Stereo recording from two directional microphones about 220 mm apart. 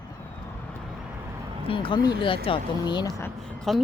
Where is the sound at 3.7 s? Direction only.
Centre (ahead or behind).